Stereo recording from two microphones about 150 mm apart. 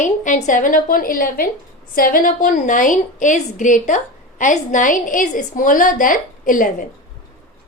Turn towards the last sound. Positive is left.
turn(degrees=65)  # may be behind; listen again after turning